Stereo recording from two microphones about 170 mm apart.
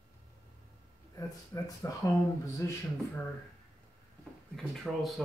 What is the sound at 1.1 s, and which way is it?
Speech, 20° left (ahead or behind).